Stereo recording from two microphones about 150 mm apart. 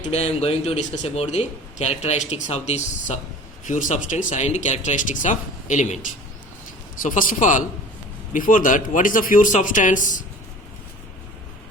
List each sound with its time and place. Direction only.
0.1 s speech: 45° left (ahead or behind)
3.7 s speech: 55° left (ahead or behind)